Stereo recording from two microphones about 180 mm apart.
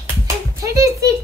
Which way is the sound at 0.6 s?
15° right (ahead or behind).